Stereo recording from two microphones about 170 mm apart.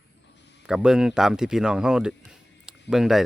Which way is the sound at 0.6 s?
5° right (ahead or behind).